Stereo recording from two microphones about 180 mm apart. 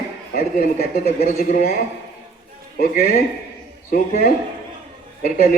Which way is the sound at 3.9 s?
55° left (ahead or behind).